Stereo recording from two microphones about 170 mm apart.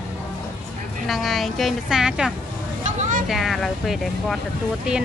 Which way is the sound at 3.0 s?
50° right (ahead or behind).